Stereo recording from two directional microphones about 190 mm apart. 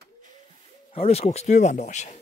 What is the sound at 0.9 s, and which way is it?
Speech, 35° left (ahead or behind).